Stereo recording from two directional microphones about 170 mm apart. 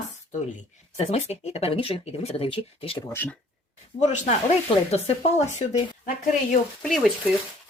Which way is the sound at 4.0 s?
40° left (ahead or behind).